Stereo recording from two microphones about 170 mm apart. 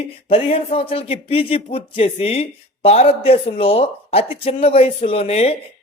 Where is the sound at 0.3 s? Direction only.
35° left (ahead or behind).